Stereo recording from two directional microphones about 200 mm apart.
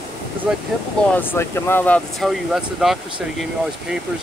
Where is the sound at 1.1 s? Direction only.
10° left (ahead or behind).